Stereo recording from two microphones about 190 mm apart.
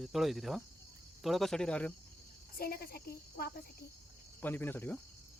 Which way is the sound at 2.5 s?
50° left (ahead or behind).